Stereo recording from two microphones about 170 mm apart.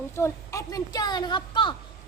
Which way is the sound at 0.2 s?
20° left (ahead or behind).